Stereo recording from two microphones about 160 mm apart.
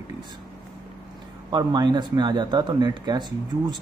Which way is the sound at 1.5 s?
25° right (ahead or behind).